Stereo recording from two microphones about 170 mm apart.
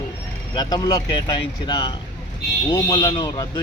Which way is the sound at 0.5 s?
25° left (ahead or behind).